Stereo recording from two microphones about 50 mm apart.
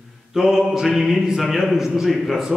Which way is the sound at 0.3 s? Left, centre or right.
Centre.